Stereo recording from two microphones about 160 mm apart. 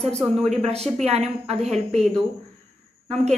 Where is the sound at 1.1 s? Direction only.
40° right (ahead or behind).